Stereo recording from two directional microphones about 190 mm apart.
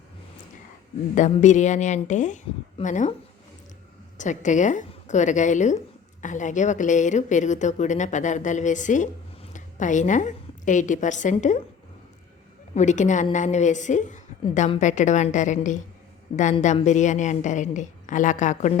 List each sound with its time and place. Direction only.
1.1 s a woman's voice: 40° left (ahead or behind)
4.2 s a woman's voice: 40° left (ahead or behind)
12.7 s a woman's voice: 40° left (ahead or behind)